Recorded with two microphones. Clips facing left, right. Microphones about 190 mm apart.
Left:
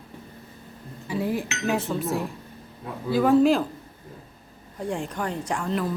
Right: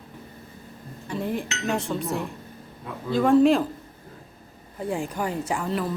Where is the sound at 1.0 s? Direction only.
5° left (ahead or behind).